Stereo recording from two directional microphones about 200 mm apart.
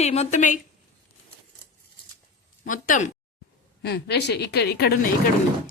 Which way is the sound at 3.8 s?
55° left (ahead or behind).